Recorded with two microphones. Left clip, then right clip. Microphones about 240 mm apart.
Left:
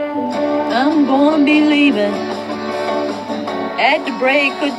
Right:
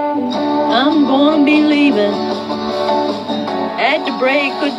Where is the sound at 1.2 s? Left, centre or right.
Centre.